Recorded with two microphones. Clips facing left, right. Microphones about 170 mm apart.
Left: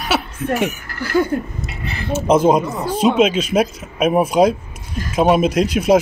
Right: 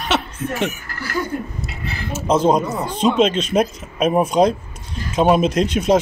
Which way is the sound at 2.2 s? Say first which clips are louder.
Left 2 dB; 10° left (ahead or behind).